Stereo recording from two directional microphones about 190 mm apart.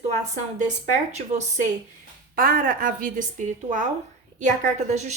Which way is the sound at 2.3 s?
45° right (ahead or behind).